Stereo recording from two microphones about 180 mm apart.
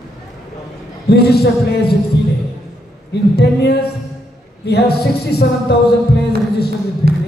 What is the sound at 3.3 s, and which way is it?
Music, 65° left (ahead or behind).